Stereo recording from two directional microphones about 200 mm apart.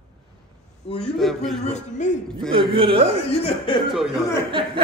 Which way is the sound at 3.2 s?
30° left (ahead or behind).